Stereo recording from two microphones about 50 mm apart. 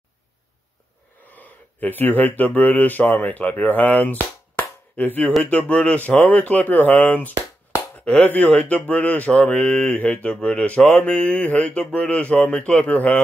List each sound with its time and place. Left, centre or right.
1.3 s a man's voice: left
8.5 s a man's voice: left
8.8 s speech: left
9.4 s a man's voice: centre